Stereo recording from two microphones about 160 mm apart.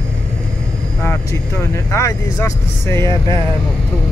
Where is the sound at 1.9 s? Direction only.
20° left (ahead or behind).